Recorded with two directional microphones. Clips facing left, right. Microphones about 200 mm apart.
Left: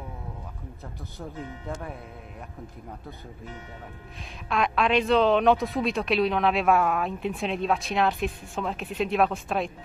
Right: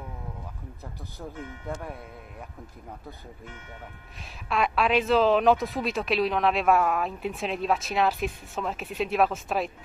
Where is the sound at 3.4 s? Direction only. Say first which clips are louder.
Left 6 dB; 35° left (ahead or behind).